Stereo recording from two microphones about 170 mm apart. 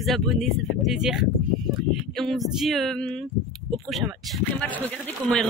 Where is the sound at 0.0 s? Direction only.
Centre (ahead or behind).